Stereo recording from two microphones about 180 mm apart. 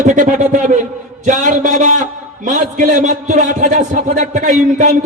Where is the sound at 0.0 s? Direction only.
45° right (ahead or behind).